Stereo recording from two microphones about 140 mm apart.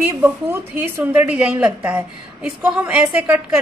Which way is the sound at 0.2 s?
15° right (ahead or behind).